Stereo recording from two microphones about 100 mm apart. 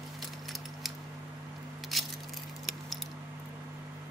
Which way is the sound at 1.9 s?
Centre (ahead or behind).